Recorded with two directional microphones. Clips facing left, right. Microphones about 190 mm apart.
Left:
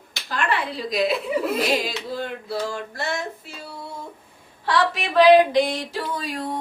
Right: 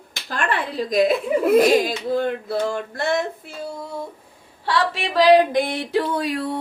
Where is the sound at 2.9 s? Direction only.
55° right (ahead or behind).